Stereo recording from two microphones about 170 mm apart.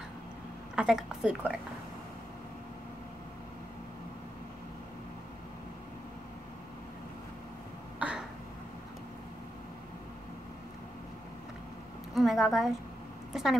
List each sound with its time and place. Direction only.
0.7 s speech: 5° right (ahead or behind)
8.0 s throat clearing: 5° right (ahead or behind)
12.1 s a woman's voice: centre (ahead or behind)